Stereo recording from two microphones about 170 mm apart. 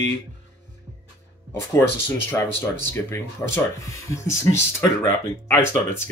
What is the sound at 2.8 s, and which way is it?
Speech, 15° left (ahead or behind).